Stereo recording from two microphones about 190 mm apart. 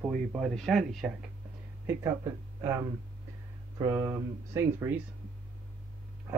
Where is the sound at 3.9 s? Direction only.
15° right (ahead or behind).